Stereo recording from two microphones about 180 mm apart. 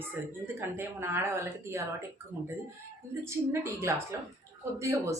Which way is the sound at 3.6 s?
15° right (ahead or behind).